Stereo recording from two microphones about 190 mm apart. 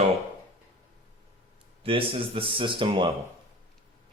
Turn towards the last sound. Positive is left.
turn(degrees=-25)  # may be behind; listen again after turning